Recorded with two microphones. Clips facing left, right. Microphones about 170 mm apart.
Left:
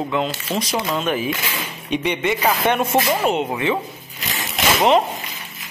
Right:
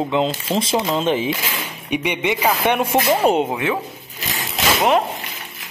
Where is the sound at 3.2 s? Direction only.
35° right (ahead or behind).